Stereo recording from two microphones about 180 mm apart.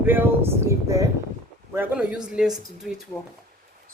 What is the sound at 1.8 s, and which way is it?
A woman's voice, 5° right (ahead or behind).